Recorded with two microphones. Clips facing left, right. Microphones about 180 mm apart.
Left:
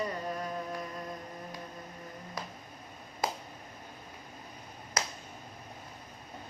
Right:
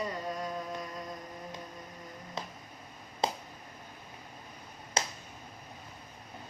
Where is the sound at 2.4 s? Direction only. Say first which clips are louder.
Right 1 dB; 25° right (ahead or behind).